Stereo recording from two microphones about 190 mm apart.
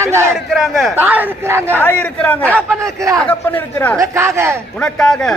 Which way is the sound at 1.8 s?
10° left (ahead or behind).